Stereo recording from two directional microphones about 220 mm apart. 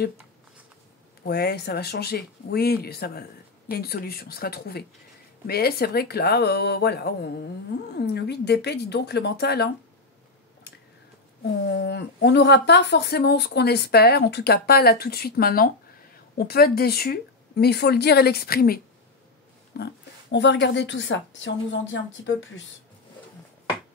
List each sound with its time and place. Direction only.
1.2 s a woman's voice: 45° left (ahead or behind)
11.6 s a woman's voice: 50° left (ahead or behind)
19.8 s speech: 50° left (ahead or behind)